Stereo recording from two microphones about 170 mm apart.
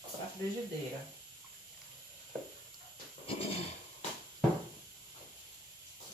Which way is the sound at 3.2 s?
35° left (ahead or behind).